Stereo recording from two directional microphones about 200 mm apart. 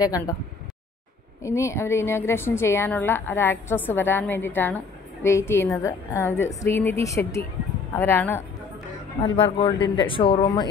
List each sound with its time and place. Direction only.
0.0 s speech: 20° left (ahead or behind)
1.4 s a woman's voice: 15° left (ahead or behind)
9.4 s speech: 25° left (ahead or behind)